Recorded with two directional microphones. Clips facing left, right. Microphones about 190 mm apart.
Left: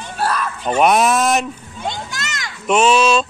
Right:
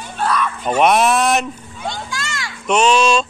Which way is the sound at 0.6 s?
5° right (ahead or behind).